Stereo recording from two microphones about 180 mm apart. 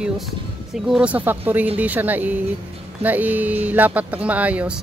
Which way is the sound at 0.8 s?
5° right (ahead or behind).